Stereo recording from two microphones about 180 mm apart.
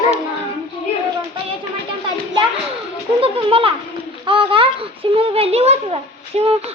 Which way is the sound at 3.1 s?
30° right (ahead or behind).